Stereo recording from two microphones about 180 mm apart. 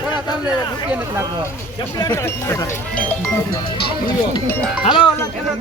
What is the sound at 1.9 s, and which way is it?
Speech, 20° left (ahead or behind).